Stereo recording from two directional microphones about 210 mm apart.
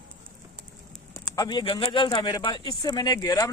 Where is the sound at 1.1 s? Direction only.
15° left (ahead or behind).